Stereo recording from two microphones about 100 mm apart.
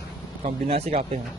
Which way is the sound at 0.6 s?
90° right.